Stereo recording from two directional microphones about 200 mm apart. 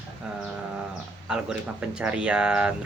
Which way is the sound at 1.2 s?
5° right (ahead or behind).